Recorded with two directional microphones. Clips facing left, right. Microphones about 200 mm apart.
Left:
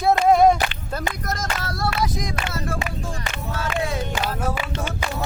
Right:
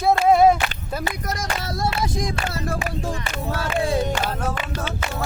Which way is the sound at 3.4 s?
35° right (ahead or behind).